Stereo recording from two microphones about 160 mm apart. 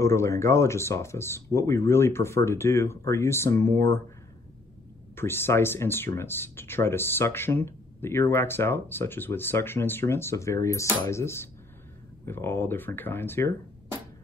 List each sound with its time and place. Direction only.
0.0 s speech: 15° left (ahead or behind)
5.1 s speech: 15° left (ahead or behind)